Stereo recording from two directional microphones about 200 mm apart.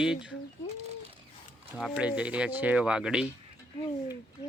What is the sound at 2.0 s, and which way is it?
Speech, 5° right (ahead or behind).